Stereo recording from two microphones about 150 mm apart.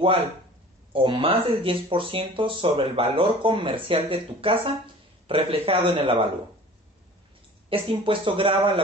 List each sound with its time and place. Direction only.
0.9 s speech: 35° right (ahead or behind)
7.7 s speech: 35° right (ahead or behind)